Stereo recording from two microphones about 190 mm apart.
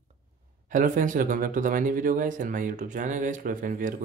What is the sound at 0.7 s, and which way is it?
Speech, 45° right (ahead or behind).